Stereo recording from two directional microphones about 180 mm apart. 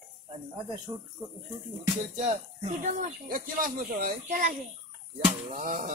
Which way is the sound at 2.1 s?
40° right (ahead or behind).